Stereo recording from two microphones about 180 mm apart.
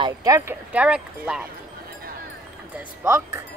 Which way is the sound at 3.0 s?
15° right (ahead or behind).